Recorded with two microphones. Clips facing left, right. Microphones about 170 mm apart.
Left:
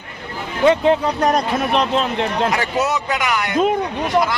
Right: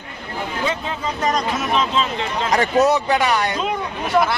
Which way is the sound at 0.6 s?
65° left (ahead or behind).